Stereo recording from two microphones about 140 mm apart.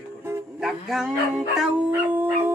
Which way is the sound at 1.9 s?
15° right (ahead or behind).